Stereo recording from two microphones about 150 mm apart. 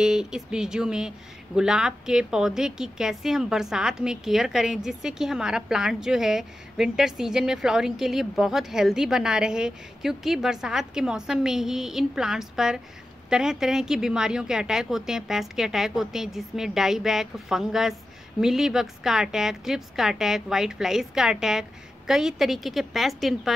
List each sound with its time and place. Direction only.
0.0 s speech: 5° right (ahead or behind)